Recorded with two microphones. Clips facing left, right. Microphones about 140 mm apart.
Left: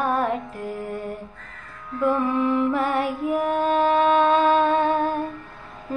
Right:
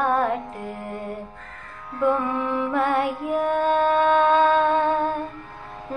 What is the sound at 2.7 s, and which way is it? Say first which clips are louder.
Music: right 1 dB; centre (ahead or behind).